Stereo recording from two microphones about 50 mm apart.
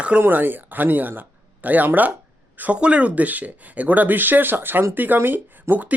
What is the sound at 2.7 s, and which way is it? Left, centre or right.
Speech, right.